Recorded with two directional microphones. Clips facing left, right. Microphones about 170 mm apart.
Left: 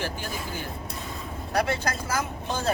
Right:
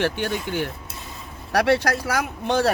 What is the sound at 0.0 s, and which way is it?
Speech, 75° right (ahead or behind).